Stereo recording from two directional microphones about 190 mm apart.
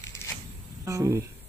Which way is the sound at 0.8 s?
15° right (ahead or behind).